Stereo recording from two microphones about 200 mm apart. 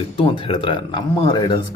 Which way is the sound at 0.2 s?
30° left (ahead or behind).